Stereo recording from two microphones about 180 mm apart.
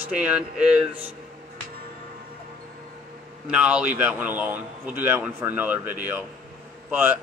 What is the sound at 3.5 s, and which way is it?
Speech, 5° right (ahead or behind).